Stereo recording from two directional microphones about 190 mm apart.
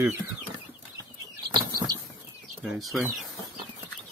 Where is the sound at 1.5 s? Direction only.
20° right (ahead or behind).